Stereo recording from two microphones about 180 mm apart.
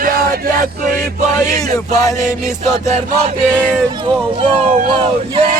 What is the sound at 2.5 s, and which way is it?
Chant, 35° right (ahead or behind).